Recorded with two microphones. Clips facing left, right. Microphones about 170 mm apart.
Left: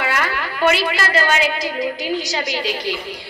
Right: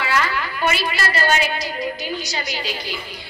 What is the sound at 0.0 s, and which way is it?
A woman's voice, 55° left (ahead or behind).